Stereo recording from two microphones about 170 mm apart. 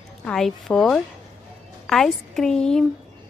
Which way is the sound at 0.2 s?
5° left (ahead or behind).